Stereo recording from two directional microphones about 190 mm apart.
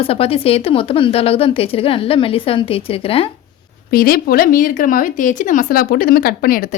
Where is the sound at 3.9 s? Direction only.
50° left (ahead or behind).